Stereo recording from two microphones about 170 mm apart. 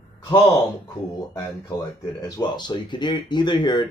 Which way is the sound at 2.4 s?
25° left (ahead or behind).